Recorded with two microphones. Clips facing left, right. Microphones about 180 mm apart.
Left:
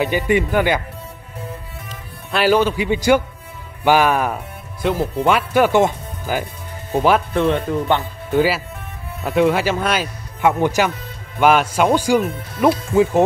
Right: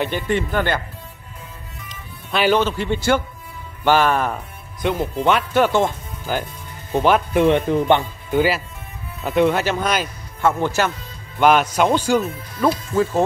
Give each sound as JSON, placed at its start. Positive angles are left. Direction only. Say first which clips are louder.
{"t": 0.0, "sound": "speech", "louder": "left 4 dB", "side_deg": 10}
{"t": 2.3, "sound": "speech", "louder": "left 2 dB", "side_deg": 5}
{"t": 7.2, "sound": "speech", "louder": "right 2 dB", "side_deg": -15}
{"t": 8.3, "sound": "speech", "louder": "left 1 dB", "side_deg": 5}
{"t": 11.3, "sound": "speech", "louder": "left 1 dB", "side_deg": 5}